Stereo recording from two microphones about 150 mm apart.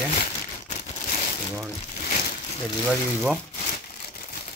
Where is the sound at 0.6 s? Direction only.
50° left (ahead or behind).